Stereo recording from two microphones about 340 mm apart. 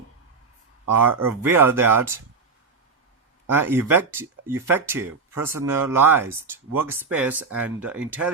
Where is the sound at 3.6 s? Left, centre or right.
Centre.